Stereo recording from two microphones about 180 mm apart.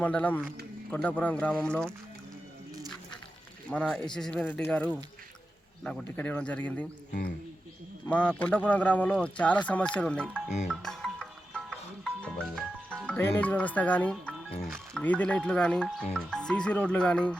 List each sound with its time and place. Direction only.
0.0 s speech: 10° left (ahead or behind)
3.7 s speech: 5° left (ahead or behind)
7.1 s speech: 55° left (ahead or behind)
8.1 s speech: 5° left (ahead or behind)
10.7 s music: centre (ahead or behind)
13.1 s speech: 10° left (ahead or behind)